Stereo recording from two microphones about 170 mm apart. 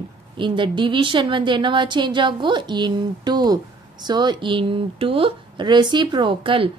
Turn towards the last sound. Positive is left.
turn(degrees=-30)  # may be behind; listen again after turning